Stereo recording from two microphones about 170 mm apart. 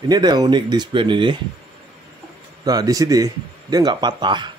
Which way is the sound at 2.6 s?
20° right (ahead or behind).